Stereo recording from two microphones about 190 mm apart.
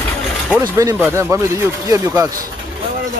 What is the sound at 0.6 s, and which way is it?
A man's voice, 15° right (ahead or behind).